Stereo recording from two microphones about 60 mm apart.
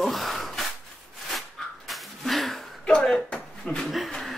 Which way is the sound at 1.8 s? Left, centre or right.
Centre.